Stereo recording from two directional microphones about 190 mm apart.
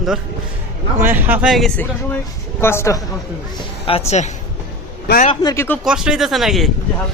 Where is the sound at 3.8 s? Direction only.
35° left (ahead or behind).